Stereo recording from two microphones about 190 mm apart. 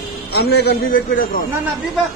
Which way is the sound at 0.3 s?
60° left (ahead or behind).